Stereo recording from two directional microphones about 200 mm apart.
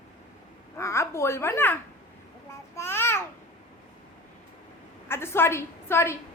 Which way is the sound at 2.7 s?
10° left (ahead or behind).